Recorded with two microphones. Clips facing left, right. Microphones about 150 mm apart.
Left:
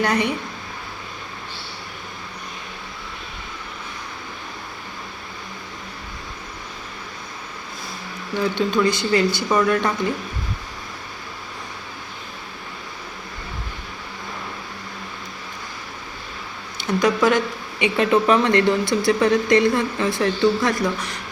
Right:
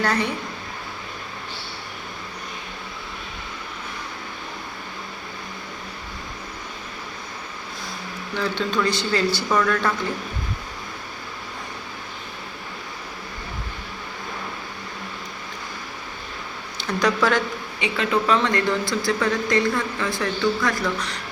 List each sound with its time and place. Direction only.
0.0 s speech: 15° left (ahead or behind)
8.4 s speech: 10° left (ahead or behind)
16.8 s speech: 10° left (ahead or behind)